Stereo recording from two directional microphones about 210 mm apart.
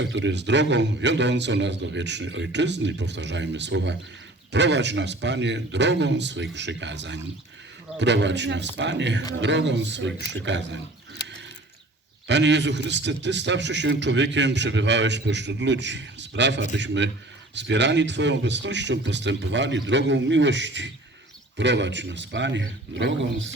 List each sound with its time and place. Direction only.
0.0 s a man's voice: 60° right (ahead or behind)
12.3 s a man's voice: 55° right (ahead or behind)